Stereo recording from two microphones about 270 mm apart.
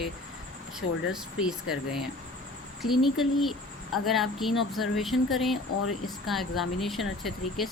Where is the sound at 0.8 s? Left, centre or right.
Left.